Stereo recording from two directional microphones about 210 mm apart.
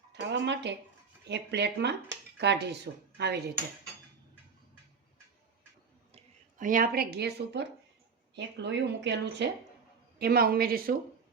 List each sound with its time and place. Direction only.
0.1 s a woman's voice: 55° right (ahead or behind)
6.1 s a woman's voice: 40° right (ahead or behind)